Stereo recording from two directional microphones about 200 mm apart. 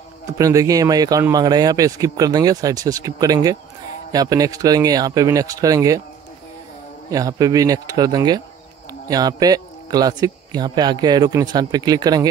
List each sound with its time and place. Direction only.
0.4 s speech: 15° right (ahead or behind)
7.1 s speech: 15° right (ahead or behind)